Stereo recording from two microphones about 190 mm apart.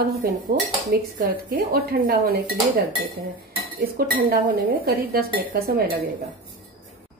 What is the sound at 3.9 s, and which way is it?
Speech, 50° right (ahead or behind).